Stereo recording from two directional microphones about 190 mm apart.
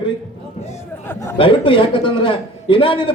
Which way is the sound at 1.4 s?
25° left (ahead or behind).